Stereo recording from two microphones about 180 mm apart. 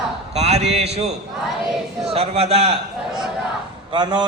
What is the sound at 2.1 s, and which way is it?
Speech, 35° right (ahead or behind).